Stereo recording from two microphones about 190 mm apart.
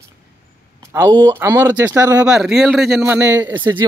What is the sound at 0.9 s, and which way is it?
Speech, 15° right (ahead or behind).